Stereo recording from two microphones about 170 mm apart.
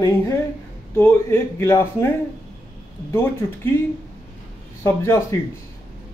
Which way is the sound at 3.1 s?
10° left (ahead or behind).